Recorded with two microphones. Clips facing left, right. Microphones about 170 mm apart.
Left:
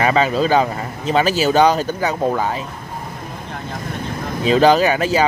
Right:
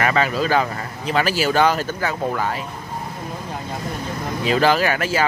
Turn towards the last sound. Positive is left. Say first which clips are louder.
# left 4 dB
turn(degrees=20)  # may be behind; listen again after turning